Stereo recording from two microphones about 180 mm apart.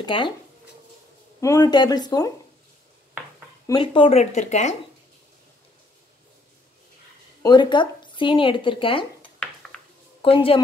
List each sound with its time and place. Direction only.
0.0 s speech: 25° left (ahead or behind)
1.4 s speech: 20° left (ahead or behind)
3.6 s speech: 25° left (ahead or behind); by 4.7 s 40° left (ahead or behind)
7.4 s speech: 25° left (ahead or behind)
9.7 s a sound: 5° left (ahead or behind)
10.2 s speech: 30° left (ahead or behind)